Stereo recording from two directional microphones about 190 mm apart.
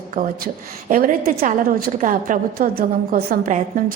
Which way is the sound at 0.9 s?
50° right (ahead or behind).